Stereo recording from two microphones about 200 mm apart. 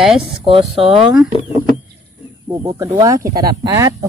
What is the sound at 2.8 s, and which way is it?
Speech, 15° right (ahead or behind).